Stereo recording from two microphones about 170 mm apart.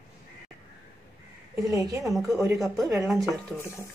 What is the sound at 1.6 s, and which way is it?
Speech, 20° right (ahead or behind).